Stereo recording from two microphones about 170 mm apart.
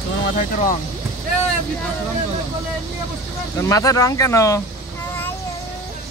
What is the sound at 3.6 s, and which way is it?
Speech, 20° left (ahead or behind).